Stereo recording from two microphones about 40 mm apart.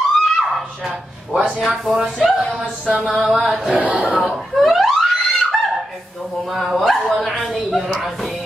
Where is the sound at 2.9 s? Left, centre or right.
Right.